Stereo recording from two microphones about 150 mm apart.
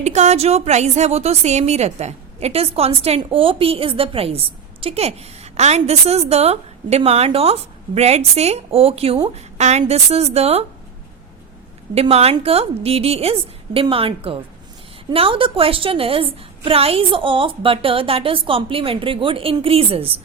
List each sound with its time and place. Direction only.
0.0 s a woman's voice: 50° right (ahead or behind)
11.9 s a woman's voice: 40° right (ahead or behind)